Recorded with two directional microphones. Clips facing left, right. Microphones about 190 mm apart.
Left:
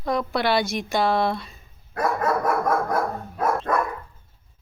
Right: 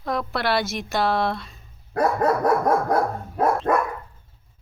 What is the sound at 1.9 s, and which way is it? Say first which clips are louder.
Dog: right 3 dB; 35° right (ahead or behind).